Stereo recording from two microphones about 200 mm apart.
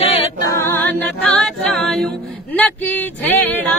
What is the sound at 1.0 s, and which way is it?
A capella, 5° left (ahead or behind).